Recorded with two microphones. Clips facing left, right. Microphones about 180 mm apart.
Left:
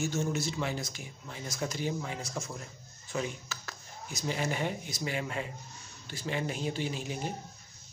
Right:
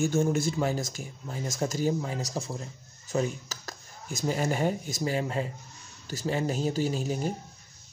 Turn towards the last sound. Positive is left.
turn(degrees=-40)  # may be behind; listen again after turning